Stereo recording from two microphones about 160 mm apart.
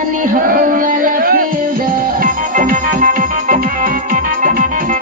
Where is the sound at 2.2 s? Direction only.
55° right (ahead or behind).